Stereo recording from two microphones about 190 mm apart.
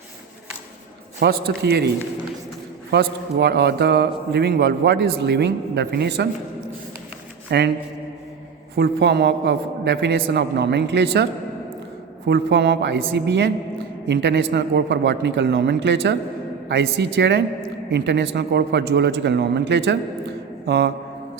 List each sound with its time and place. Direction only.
1.2 s a man's voice: 55° right (ahead or behind)
2.9 s a man's voice: 60° right (ahead or behind)
7.5 s a man's voice: 60° right (ahead or behind)
8.7 s a man's voice: 60° right (ahead or behind)
12.3 s a man's voice: 65° right (ahead or behind)